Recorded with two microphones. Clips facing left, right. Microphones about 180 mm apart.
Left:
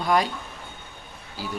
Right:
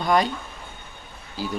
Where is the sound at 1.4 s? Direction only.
5° left (ahead or behind).